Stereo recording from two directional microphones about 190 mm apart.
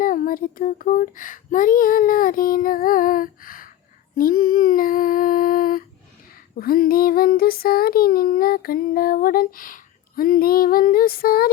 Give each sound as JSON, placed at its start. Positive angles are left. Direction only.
{"t": 0.0, "sound": "child singing", "side_deg": 45}